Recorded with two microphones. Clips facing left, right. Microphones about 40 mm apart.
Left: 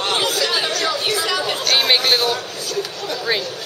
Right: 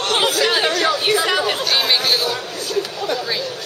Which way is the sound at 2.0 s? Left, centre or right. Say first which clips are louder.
Left 1 dB; centre.